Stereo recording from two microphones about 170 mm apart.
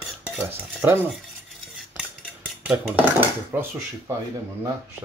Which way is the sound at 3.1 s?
15° right (ahead or behind).